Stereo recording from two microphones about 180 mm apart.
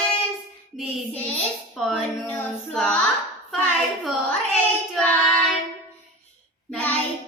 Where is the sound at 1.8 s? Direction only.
5° left (ahead or behind).